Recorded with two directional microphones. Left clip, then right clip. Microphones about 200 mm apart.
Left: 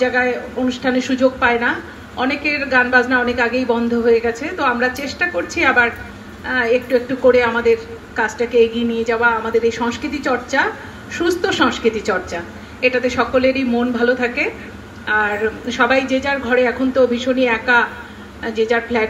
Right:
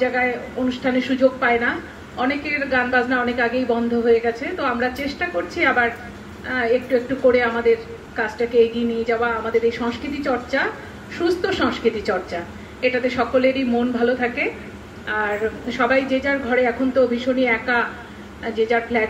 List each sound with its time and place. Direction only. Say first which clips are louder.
0.7 s a woman's voice: left 2 dB; 25° left (ahead or behind)